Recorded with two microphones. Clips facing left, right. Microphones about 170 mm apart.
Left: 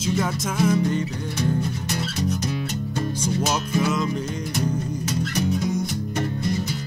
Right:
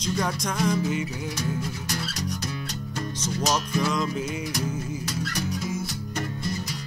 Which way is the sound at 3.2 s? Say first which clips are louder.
Even; 5° left (ahead or behind).